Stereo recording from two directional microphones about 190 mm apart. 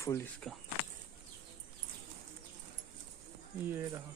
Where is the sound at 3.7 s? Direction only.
10° right (ahead or behind).